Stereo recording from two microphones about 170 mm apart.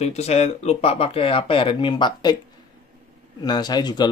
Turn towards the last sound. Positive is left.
turn(degrees=25)  # may be behind; listen again after turning